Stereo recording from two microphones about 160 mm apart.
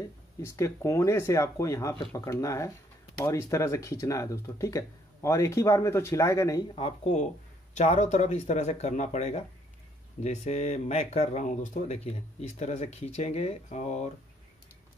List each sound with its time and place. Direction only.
0.4 s speech: 20° left (ahead or behind)
6.7 s speech: 45° left (ahead or behind)